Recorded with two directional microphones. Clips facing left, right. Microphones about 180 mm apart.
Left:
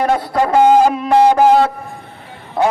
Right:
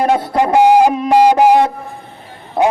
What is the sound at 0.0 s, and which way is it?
Speech, 20° right (ahead or behind).